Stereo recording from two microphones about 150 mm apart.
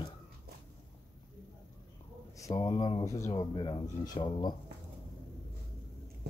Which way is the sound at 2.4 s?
25° left (ahead or behind).